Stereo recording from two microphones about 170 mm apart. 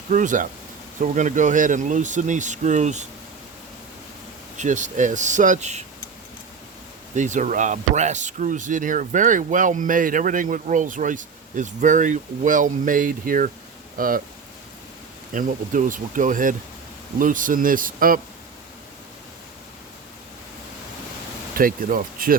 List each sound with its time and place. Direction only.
0.1 s speech: 50° right (ahead or behind)
4.5 s speech: 45° right (ahead or behind)
7.1 s speech: 45° right (ahead or behind)
15.3 s speech: 50° right (ahead or behind)
21.6 s speech: 55° right (ahead or behind)